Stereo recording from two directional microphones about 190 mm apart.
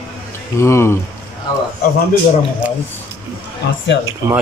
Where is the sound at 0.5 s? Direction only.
15° left (ahead or behind).